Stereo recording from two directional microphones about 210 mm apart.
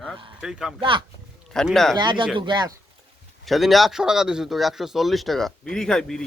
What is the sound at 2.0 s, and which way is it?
Speech, 20° right (ahead or behind).